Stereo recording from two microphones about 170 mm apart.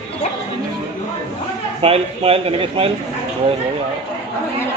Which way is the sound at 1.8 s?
35° right (ahead or behind).